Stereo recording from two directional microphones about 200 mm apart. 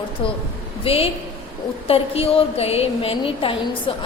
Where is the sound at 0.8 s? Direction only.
25° left (ahead or behind).